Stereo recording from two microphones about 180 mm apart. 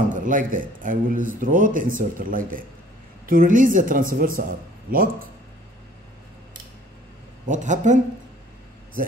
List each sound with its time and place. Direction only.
0.1 s a man's voice: 45° right (ahead or behind)
7.4 s a man's voice: 45° right (ahead or behind)